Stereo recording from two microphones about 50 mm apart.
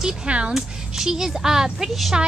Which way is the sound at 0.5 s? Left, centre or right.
Centre.